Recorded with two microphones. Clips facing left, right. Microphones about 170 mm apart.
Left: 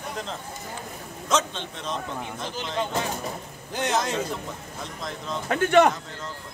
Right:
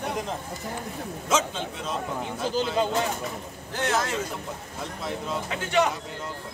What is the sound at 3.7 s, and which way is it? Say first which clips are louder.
Speech: left 1 dB; 15° left (ahead or behind).